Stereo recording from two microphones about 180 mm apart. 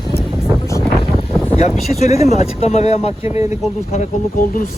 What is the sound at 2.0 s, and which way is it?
Speech, 35° left (ahead or behind).